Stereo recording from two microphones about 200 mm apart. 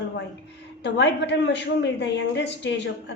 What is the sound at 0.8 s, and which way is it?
A woman's voice, 60° left (ahead or behind).